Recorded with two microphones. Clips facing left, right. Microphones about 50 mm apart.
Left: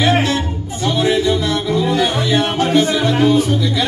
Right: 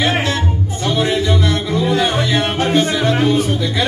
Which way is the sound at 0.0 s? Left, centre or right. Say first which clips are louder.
Left 2 dB; right.